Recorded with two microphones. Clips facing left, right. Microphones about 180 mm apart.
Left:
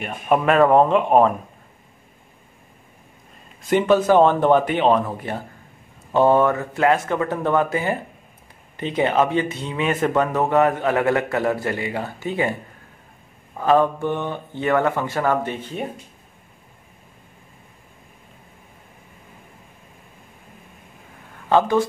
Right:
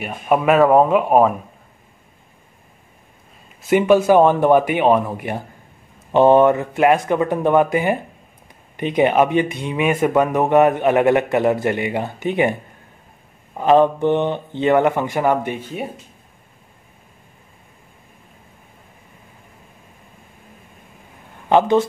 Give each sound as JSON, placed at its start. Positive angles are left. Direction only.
{"t": 0.0, "sound": "speech", "side_deg": -5}
{"t": 3.6, "sound": "speech", "side_deg": -10}
{"t": 13.6, "sound": "speech", "side_deg": -20}
{"t": 21.5, "sound": "speech", "side_deg": -20}